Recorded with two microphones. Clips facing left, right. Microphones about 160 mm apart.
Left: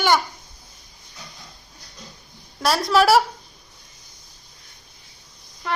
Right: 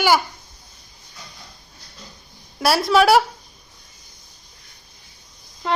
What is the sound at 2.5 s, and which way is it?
Speech, 10° right (ahead or behind).